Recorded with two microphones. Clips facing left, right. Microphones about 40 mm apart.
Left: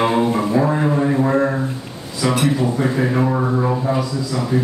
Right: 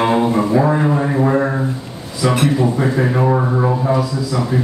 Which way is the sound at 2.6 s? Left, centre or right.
Centre.